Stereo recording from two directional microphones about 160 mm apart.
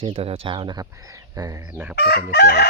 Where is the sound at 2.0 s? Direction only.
75° left (ahead or behind).